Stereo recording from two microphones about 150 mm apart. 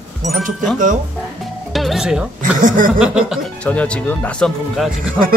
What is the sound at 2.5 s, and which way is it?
Chuckle, 65° right (ahead or behind).